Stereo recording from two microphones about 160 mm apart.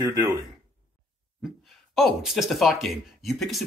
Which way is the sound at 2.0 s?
Centre (ahead or behind).